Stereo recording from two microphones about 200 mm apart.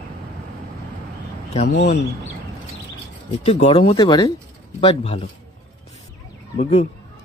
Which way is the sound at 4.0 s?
20° left (ahead or behind).